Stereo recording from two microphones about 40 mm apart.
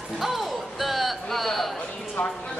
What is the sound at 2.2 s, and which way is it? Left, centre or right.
Speech, left.